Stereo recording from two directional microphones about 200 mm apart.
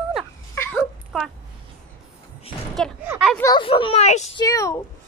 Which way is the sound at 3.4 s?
20° left (ahead or behind).